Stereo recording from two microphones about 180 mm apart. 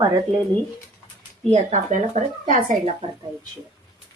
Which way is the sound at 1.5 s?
40° right (ahead or behind).